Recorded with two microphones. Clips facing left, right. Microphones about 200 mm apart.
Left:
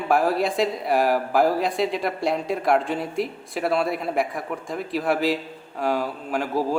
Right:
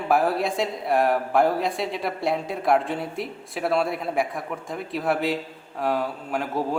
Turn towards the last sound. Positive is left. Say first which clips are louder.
# left 2 dB
turn(degrees=0)  # may be behind; listen again after turning